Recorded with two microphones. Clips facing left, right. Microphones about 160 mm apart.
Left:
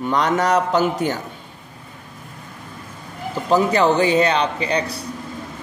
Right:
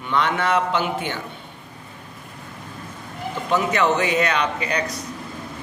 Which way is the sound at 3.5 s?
35° left (ahead or behind).